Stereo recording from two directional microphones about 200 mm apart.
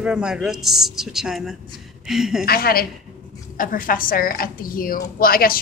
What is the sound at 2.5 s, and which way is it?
A woman's voice, 50° left (ahead or behind).